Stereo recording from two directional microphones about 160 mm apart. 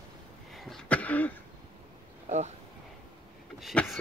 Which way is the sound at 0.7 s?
10° left (ahead or behind).